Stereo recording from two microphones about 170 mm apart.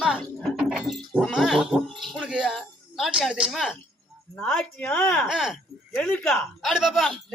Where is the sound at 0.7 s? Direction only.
Centre (ahead or behind).